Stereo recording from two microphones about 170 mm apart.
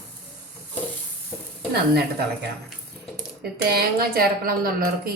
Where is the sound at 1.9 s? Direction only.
70° right (ahead or behind).